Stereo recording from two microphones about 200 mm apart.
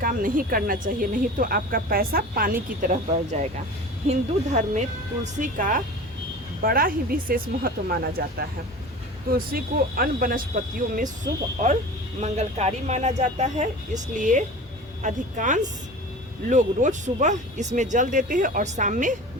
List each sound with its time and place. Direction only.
0.0 s speech: 45° right (ahead or behind)
4.1 s speech: 35° right (ahead or behind)
12.2 s speech: 35° right (ahead or behind)